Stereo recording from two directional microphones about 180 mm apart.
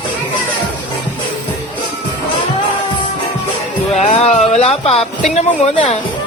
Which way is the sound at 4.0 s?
40° left (ahead or behind).